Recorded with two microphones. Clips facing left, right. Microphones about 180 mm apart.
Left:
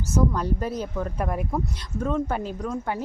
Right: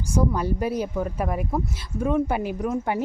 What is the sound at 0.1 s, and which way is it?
Speech, 10° right (ahead or behind).